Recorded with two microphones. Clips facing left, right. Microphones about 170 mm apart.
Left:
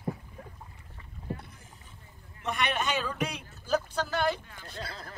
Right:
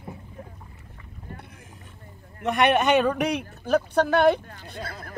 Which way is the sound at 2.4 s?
65° right (ahead or behind).